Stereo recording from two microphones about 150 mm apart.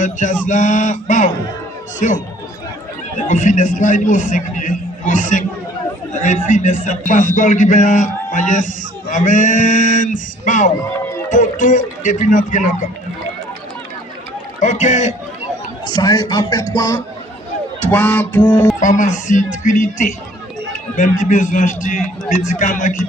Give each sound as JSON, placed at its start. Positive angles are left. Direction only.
{"t": 0.0, "sound": "speech", "side_deg": 60}
{"t": 3.2, "sound": "speech", "side_deg": 55}
{"t": 14.6, "sound": "a man's voice", "side_deg": 55}
{"t": 15.9, "sound": "speech", "side_deg": 30}
{"t": 17.8, "sound": "a sound", "side_deg": 10}
{"t": 18.8, "sound": "speech", "side_deg": 55}